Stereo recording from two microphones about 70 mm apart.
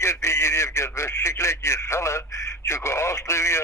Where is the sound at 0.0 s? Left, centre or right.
Left.